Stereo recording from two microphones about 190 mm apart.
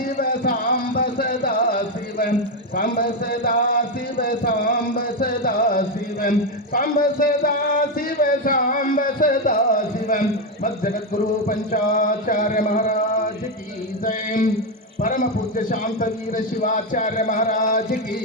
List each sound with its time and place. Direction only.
0.2 s music: 50° left (ahead or behind)
2.7 s a man's voice: 50° left (ahead or behind)
6.7 s a sound: 50° left (ahead or behind)
11.4 s a man's voice: 45° left (ahead or behind)
14.0 s a sound: 45° left (ahead or behind)
15.0 s a man's voice: 45° left (ahead or behind)